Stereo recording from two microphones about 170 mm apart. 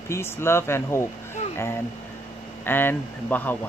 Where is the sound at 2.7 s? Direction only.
10° left (ahead or behind).